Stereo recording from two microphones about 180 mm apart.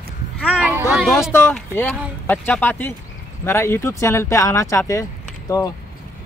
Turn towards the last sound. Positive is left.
turn(degrees=15)  # may be behind; listen again after turning